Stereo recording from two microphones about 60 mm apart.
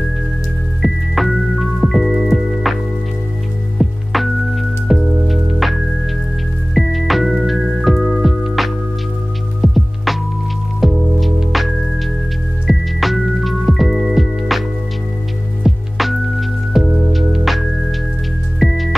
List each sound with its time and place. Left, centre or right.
0.8 s music: centre
15.6 s music: centre